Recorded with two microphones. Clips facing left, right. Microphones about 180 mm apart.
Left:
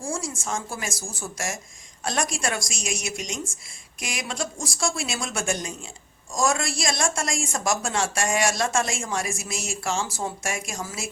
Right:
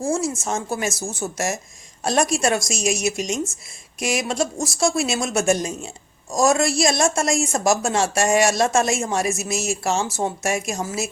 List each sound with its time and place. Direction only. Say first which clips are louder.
0.0 s a woman's voice: right 8 dB; 20° right (ahead or behind)